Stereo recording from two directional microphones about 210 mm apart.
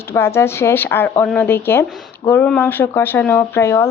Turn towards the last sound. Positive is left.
turn(degrees=15)  # may be behind; listen again after turning